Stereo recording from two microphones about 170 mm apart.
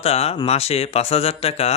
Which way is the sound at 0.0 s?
35° left (ahead or behind).